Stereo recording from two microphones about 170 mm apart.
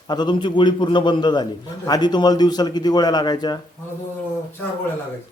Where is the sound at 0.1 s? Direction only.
25° left (ahead or behind).